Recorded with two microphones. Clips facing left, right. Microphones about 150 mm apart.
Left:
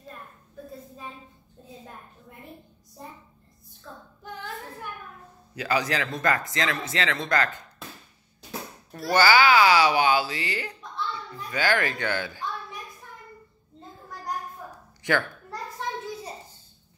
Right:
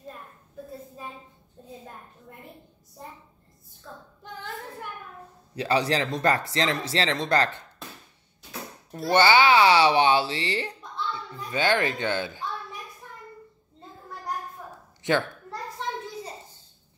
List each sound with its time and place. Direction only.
4.2 s a sound: centre (ahead or behind)
5.6 s speech: 30° right (ahead or behind)
8.9 s a child's voice: 25° right (ahead or behind)
15.0 s a child's voice: 20° right (ahead or behind)